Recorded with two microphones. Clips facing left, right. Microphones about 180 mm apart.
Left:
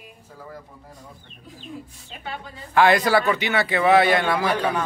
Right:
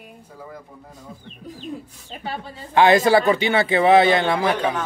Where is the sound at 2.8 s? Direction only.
25° right (ahead or behind).